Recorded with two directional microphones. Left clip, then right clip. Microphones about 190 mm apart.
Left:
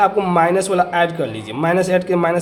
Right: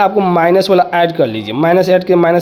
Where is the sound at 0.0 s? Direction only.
30° right (ahead or behind).